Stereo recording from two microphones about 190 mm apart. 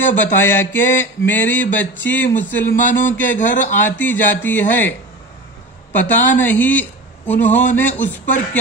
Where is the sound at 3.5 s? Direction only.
40° left (ahead or behind).